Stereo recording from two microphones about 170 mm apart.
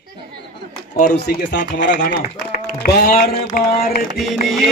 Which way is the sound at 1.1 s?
70° left (ahead or behind).